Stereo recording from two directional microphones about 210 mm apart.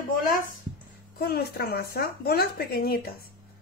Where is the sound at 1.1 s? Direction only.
45° left (ahead or behind).